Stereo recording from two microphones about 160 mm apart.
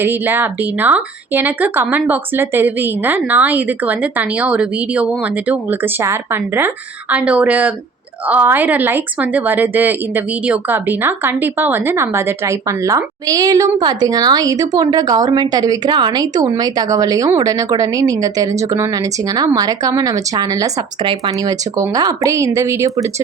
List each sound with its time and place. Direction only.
0.0 s speech: 10° right (ahead or behind)